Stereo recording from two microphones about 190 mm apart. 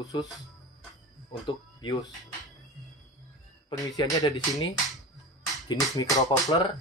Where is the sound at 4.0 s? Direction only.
20° left (ahead or behind).